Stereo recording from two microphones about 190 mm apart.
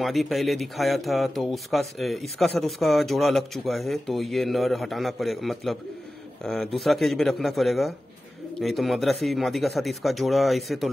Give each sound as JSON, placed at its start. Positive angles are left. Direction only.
{"t": 0.0, "sound": "speech", "side_deg": 0}